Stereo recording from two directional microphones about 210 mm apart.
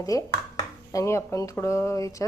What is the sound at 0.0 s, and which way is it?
A woman's voice, 15° left (ahead or behind).